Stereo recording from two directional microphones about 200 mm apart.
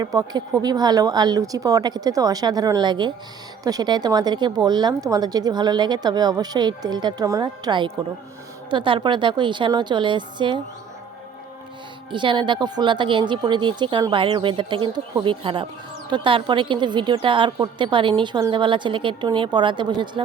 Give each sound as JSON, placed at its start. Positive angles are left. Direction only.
{"t": 0.0, "sound": "a woman's voice", "side_deg": -20}
{"t": 12.1, "sound": "a woman's voice", "side_deg": -25}